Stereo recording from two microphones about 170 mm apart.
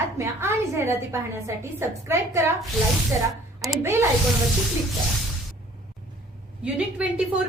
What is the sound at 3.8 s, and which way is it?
Speech, 15° right (ahead or behind).